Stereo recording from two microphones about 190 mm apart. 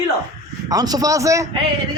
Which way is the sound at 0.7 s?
20° right (ahead or behind).